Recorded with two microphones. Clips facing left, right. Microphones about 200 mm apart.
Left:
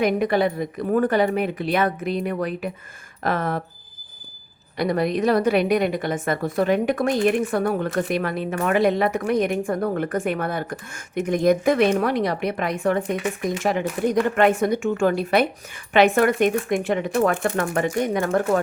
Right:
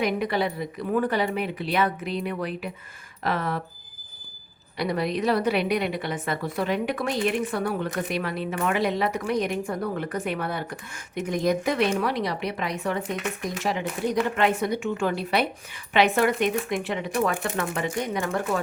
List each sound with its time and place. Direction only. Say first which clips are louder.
0.0 s speech: left 5 dB; 50° left (ahead or behind)
4.8 s speech: left 4 dB; 50° left (ahead or behind)